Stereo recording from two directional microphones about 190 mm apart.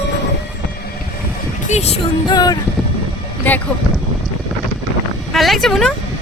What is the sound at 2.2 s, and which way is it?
Music, 20° left (ahead or behind).